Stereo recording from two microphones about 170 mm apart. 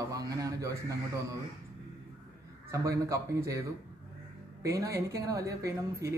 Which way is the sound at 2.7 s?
20° right (ahead or behind).